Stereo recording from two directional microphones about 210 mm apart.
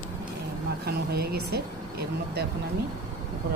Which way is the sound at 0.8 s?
50° right (ahead or behind).